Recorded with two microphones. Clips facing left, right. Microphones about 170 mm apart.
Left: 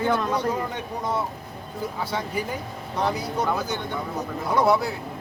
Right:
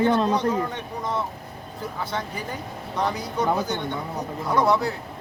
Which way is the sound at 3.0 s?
5° left (ahead or behind).